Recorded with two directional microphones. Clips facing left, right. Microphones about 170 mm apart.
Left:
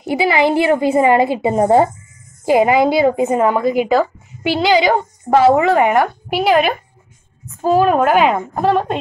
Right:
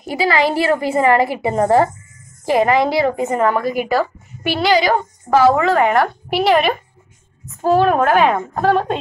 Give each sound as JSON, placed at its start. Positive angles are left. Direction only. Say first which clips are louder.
{"t": 0.0, "sound": "a woman's voice", "louder": "left 2 dB", "side_deg": 20}
{"t": 5.9, "sound": "a woman's voice", "louder": "left 1 dB", "side_deg": 5}
{"t": 7.6, "sound": "a woman's voice", "louder": "left 1 dB", "side_deg": 10}